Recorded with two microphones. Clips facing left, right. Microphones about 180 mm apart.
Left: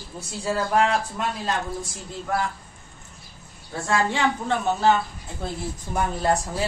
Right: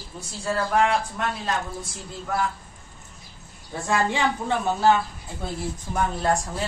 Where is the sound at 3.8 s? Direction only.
15° right (ahead or behind).